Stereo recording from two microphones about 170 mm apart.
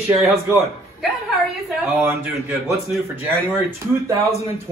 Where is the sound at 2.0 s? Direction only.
10° right (ahead or behind).